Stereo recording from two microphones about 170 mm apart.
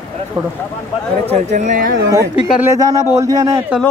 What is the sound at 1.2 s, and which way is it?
Speech, 40° right (ahead or behind).